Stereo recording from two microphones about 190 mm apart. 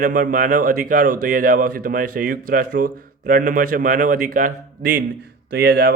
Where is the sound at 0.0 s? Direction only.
45° right (ahead or behind).